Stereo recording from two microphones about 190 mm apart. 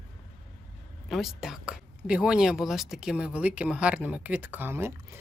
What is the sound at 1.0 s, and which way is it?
A woman's voice, centre (ahead or behind).